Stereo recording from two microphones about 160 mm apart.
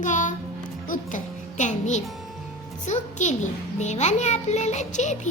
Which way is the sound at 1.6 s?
50° left (ahead or behind).